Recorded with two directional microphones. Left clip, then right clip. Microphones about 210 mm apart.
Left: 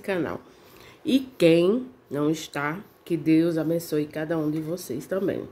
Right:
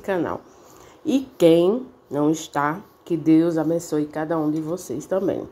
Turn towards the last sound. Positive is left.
turn(degrees=0)  # may be behind; listen again after turning